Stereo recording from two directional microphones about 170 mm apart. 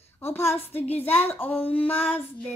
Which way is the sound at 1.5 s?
35° left (ahead or behind).